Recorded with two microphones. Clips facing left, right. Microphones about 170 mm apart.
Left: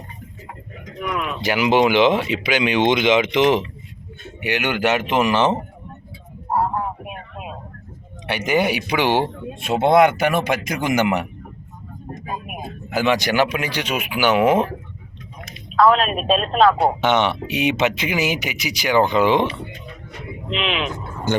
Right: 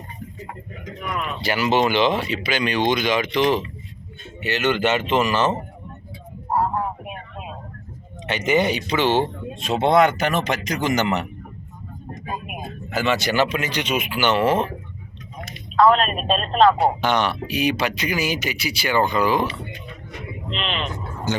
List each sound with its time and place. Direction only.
0.9 s speech: centre (ahead or behind)
1.4 s speech: 15° left (ahead or behind)
8.3 s speech: 10° left (ahead or behind)
12.9 s speech: 15° left (ahead or behind)
15.4 s speech: centre (ahead or behind)
17.4 s speech: 25° left (ahead or behind)
20.5 s speech: 5° left (ahead or behind)